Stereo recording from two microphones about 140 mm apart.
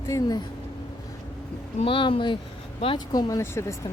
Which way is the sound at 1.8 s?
40° left (ahead or behind).